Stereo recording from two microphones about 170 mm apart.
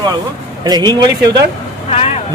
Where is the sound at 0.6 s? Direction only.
25° right (ahead or behind).